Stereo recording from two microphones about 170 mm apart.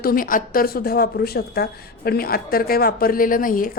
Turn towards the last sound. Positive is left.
turn(degrees=55)  # may be behind; listen again after turning